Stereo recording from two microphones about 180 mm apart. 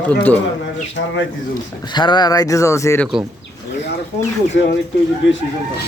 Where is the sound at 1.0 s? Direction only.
75° left (ahead or behind).